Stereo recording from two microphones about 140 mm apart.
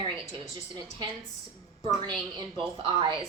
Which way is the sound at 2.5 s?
35° right (ahead or behind).